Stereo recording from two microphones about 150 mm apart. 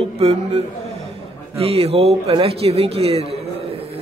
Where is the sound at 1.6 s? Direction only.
40° right (ahead or behind).